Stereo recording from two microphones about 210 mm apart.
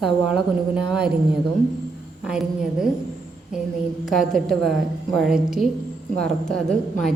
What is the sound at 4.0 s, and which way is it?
A woman's voice, centre (ahead or behind).